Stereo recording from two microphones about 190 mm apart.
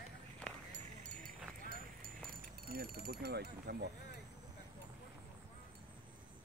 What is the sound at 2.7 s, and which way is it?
Speech, 55° right (ahead or behind).